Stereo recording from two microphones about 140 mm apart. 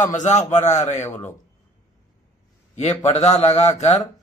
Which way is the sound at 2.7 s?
55° left (ahead or behind).